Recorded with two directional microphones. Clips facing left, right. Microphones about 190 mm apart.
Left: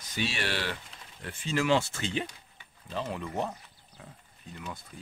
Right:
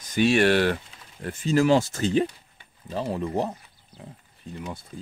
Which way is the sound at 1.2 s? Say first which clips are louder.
Right 8 dB; 40° right (ahead or behind).